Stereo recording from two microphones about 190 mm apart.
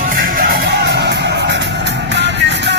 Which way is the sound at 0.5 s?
65° right (ahead or behind).